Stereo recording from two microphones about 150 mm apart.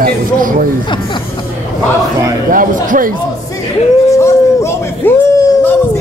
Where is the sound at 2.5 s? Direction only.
65° right (ahead or behind).